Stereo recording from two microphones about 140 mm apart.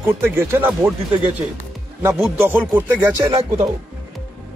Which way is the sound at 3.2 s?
40° right (ahead or behind).